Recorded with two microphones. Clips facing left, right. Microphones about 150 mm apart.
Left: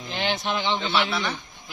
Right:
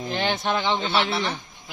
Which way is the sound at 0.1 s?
45° right (ahead or behind).